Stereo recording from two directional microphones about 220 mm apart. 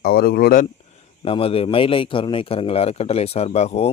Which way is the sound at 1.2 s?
25° left (ahead or behind).